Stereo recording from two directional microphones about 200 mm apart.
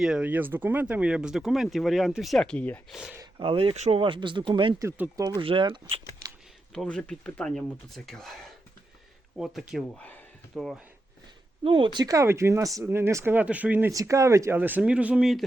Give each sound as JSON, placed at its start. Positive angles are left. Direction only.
{"t": 0.0, "sound": "speech", "side_deg": -5}
{"t": 3.2, "sound": "speech", "side_deg": -25}
{"t": 5.4, "sound": "speech", "side_deg": -25}
{"t": 6.7, "sound": "speech", "side_deg": 5}
{"t": 9.4, "sound": "speech", "side_deg": 0}
{"t": 11.6, "sound": "speech", "side_deg": -25}